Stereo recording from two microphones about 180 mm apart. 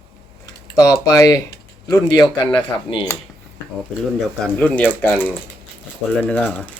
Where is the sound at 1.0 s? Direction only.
15° left (ahead or behind).